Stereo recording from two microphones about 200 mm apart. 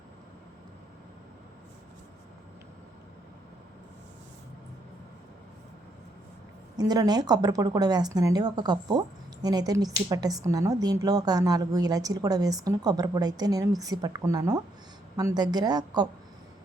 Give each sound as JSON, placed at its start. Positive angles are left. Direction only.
{"t": 6.7, "sound": "speech", "side_deg": -20}